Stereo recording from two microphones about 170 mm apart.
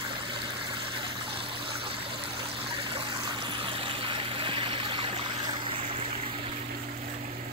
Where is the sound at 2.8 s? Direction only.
35° right (ahead or behind).